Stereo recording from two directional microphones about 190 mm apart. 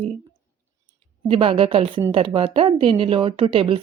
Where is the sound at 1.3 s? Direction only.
30° right (ahead or behind).